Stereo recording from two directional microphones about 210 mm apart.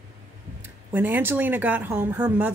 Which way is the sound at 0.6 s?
10° right (ahead or behind).